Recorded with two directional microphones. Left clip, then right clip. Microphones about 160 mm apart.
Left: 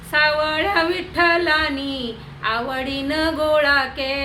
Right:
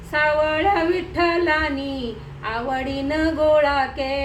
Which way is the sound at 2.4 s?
10° right (ahead or behind).